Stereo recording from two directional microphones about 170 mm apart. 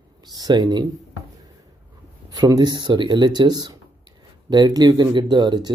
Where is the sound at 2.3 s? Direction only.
25° right (ahead or behind).